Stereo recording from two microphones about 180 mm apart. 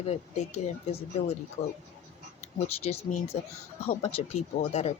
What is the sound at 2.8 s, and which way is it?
Speech, 35° left (ahead or behind).